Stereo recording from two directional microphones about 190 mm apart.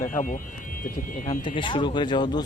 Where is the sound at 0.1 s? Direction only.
45° left (ahead or behind).